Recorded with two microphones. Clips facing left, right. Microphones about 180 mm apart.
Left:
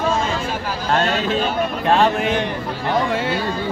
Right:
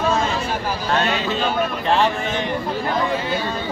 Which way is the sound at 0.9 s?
50° left (ahead or behind).